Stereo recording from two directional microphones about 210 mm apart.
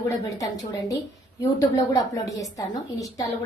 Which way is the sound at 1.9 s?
15° left (ahead or behind).